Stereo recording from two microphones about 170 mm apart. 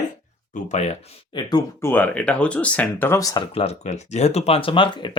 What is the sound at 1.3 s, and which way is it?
Speech, 25° left (ahead or behind).